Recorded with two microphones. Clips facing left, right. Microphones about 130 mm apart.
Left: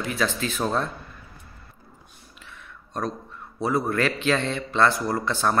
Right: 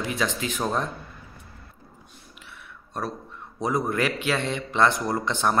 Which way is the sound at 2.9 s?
10° right (ahead or behind).